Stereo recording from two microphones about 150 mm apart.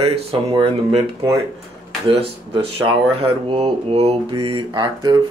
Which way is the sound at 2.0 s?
40° right (ahead or behind).